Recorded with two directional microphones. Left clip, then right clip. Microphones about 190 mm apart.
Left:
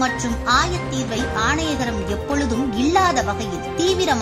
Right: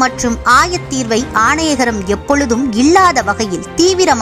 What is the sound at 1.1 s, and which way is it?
Speech, 25° right (ahead or behind).